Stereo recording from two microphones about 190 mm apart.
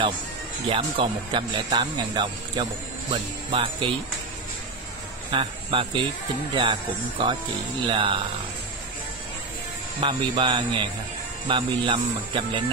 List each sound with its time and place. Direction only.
0.7 s speech: 25° right (ahead or behind)
5.3 s speech: 25° right (ahead or behind)
7.9 s speech: 25° right (ahead or behind)
9.9 s speech: 25° right (ahead or behind)